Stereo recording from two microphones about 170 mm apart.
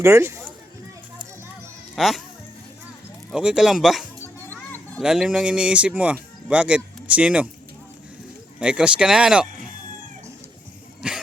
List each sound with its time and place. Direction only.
0.0 s speech: 15° right (ahead or behind)
2.0 s speech: centre (ahead or behind)
3.3 s speech: 5° right (ahead or behind)
4.4 s a sound: 10° left (ahead or behind)
5.0 s speech: 5° right (ahead or behind)
8.5 s speech: 5° right (ahead or behind)
11.0 s dog: 5° right (ahead or behind)